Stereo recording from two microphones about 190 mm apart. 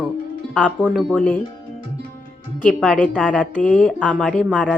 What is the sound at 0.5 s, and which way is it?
Speech, 5° left (ahead or behind).